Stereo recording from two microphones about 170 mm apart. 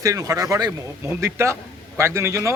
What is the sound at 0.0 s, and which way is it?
A man's voice, 20° right (ahead or behind).